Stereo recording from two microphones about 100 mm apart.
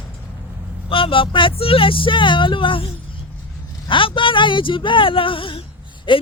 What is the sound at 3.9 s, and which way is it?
Speech, 60° left (ahead or behind).